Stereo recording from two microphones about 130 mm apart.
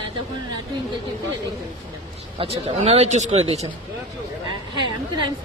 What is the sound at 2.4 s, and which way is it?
Speech, 50° right (ahead or behind).